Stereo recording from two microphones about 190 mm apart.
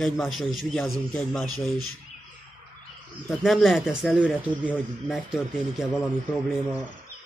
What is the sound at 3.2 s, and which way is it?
A man's voice, centre (ahead or behind).